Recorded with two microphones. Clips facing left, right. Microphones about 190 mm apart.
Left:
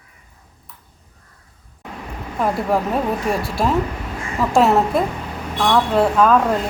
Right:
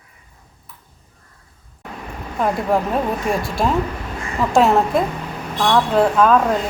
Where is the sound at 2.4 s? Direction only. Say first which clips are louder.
Right 1 dB; centre (ahead or behind).